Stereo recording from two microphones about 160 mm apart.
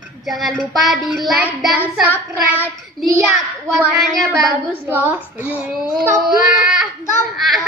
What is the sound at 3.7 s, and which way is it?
Child singing, centre (ahead or behind).